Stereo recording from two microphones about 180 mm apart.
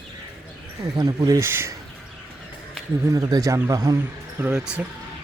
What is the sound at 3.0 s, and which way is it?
Speech, 20° right (ahead or behind).